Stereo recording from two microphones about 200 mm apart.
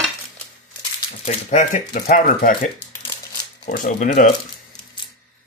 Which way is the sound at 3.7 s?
40° left (ahead or behind).